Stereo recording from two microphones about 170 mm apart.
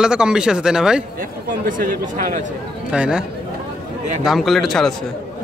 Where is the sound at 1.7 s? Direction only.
55° right (ahead or behind).